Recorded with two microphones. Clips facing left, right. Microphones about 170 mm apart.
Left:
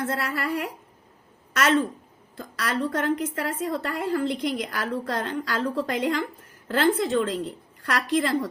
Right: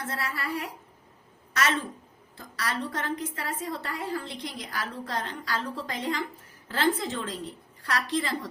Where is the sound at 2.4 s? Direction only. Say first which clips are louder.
Left 5 dB; 55° left (ahead or behind).